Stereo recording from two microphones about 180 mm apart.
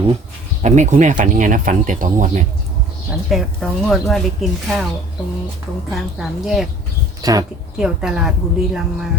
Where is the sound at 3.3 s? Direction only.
Centre (ahead or behind).